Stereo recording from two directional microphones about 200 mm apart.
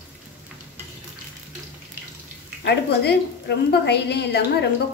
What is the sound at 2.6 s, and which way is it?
A woman's voice, 55° left (ahead or behind).